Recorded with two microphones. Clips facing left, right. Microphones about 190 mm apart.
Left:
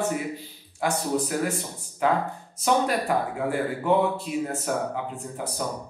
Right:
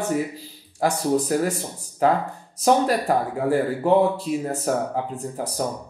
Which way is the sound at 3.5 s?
35° right (ahead or behind).